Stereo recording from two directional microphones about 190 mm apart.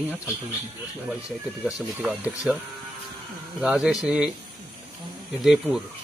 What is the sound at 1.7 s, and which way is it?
Speech, 5° right (ahead or behind).